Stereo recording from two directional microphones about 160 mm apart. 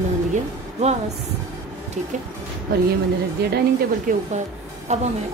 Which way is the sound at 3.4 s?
85° right.